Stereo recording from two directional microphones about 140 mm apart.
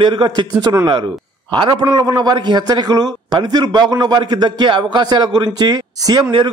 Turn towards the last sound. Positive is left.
turn(degrees=-30)  # may be behind; listen again after turning